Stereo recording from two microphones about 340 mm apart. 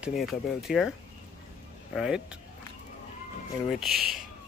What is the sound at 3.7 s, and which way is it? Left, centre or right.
Speech, centre.